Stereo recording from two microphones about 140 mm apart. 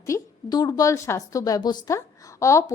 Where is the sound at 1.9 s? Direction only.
20° left (ahead or behind).